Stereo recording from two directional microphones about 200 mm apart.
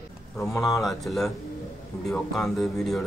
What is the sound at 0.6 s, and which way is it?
Speech, centre (ahead or behind).